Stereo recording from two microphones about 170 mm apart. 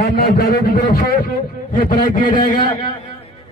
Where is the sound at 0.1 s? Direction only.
80° left.